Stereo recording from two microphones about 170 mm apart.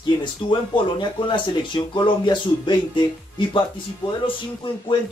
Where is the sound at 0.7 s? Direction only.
30° left (ahead or behind).